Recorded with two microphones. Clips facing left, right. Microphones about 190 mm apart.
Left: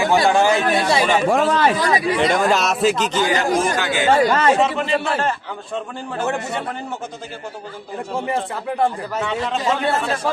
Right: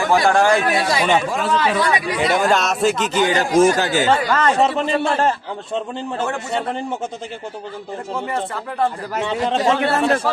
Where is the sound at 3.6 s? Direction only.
40° right (ahead or behind).